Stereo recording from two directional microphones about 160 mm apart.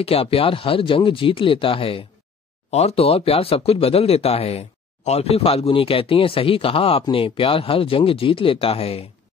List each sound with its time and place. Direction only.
0.0 s speech: 35° left (ahead or behind)